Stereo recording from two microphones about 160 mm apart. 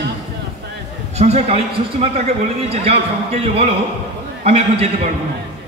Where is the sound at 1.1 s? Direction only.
40° right (ahead or behind).